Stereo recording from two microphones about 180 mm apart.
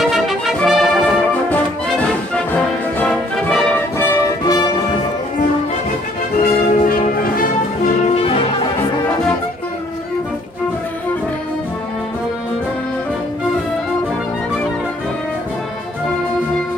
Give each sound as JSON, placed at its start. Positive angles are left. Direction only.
{"t": 0.0, "sound": "brass instrument", "side_deg": 0}
{"t": 3.0, "sound": "music", "side_deg": 10}
{"t": 6.4, "sound": "music", "side_deg": 50}
{"t": 8.2, "sound": "brass instrument", "side_deg": 30}